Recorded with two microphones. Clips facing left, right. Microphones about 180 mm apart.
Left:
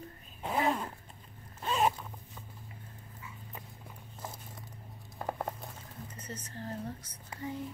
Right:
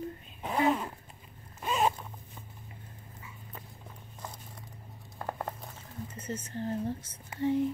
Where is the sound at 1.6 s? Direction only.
5° right (ahead or behind).